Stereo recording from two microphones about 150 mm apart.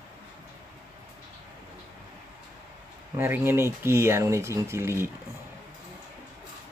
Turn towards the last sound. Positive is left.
turn(degrees=-15)  # may be behind; listen again after turning